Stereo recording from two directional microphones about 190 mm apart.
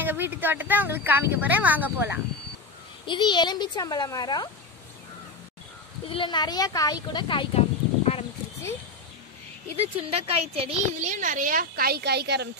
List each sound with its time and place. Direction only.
0.0 s speech: 10° right (ahead or behind)
3.1 s a woman's voice: 25° left (ahead or behind)
6.0 s speech: 25° left (ahead or behind)
9.8 s a woman's voice: 30° right (ahead or behind); by 12.4 s 60° right (ahead or behind)